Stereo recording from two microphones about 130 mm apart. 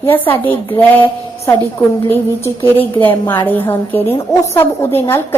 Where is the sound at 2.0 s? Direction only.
15° left (ahead or behind).